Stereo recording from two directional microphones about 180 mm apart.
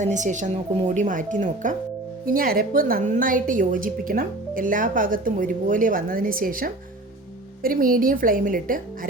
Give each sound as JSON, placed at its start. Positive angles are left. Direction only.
{"t": 0.0, "sound": "a woman's voice", "side_deg": -40}